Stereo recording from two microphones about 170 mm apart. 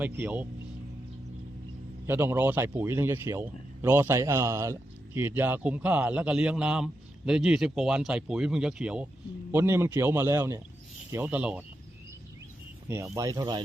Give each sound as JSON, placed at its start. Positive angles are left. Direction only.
{"t": 0.0, "sound": "a man's voice", "side_deg": -10}
{"t": 2.0, "sound": "a man's voice", "side_deg": -15}
{"t": 13.1, "sound": "speech", "side_deg": -20}